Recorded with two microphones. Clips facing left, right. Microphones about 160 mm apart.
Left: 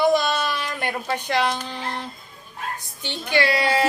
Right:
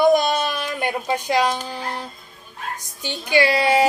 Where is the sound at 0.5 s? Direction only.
15° right (ahead or behind).